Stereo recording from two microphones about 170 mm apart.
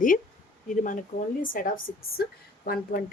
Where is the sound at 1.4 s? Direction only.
55° left (ahead or behind).